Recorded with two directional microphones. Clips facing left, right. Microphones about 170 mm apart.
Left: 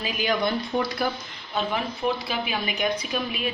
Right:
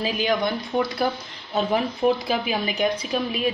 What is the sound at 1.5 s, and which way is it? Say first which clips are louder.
A woman's voice: right 5 dB; 40° right (ahead or behind).